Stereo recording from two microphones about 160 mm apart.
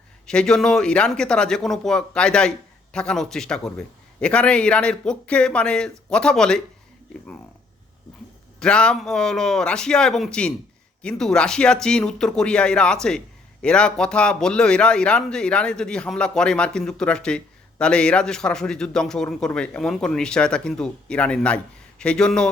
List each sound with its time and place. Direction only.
0.3 s speech: 5° left (ahead or behind)
8.5 s speech: 5° left (ahead or behind)